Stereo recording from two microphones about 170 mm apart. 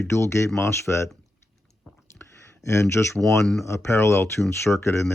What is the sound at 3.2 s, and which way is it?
Speech, 5° left (ahead or behind).